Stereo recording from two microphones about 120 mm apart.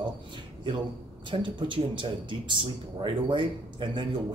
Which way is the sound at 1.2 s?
40° right (ahead or behind).